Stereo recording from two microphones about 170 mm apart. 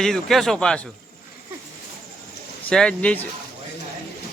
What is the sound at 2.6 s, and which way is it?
Speech, 5° left (ahead or behind).